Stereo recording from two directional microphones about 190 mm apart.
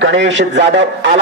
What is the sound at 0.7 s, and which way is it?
Chopping, 65° right (ahead or behind).